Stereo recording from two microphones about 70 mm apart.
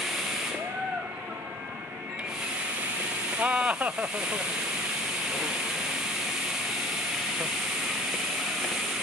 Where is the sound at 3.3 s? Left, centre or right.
Centre.